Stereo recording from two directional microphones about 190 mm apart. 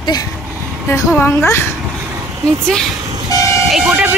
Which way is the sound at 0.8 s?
10° left (ahead or behind).